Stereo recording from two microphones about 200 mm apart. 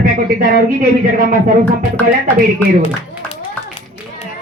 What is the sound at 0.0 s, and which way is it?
Speech, 45° right (ahead or behind).